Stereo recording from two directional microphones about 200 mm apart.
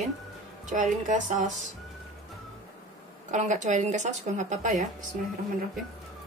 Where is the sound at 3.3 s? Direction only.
35° right (ahead or behind).